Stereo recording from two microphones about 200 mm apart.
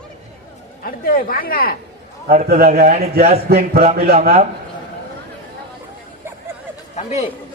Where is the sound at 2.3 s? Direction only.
45° right (ahead or behind).